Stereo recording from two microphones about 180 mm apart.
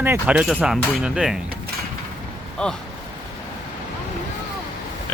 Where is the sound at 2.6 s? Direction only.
5° left (ahead or behind).